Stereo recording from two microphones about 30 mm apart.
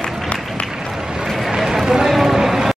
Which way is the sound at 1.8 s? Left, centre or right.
Centre.